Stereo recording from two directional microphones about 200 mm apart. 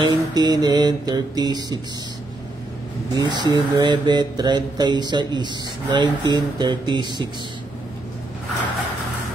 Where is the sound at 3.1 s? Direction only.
20° right (ahead or behind).